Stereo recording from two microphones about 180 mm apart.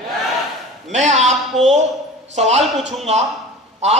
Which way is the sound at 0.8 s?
40° right (ahead or behind).